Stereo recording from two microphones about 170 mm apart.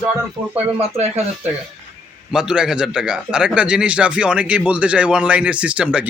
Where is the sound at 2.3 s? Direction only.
5° right (ahead or behind).